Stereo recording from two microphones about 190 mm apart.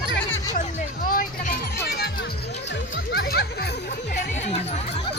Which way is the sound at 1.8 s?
55° left (ahead or behind).